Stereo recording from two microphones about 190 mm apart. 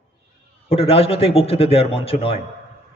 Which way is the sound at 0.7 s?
30° left (ahead or behind).